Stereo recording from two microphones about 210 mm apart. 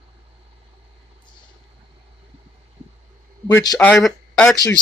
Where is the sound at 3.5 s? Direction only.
20° left (ahead or behind).